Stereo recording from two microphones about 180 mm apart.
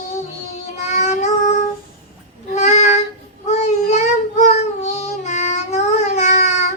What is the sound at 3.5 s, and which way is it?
Child singing, 40° left (ahead or behind).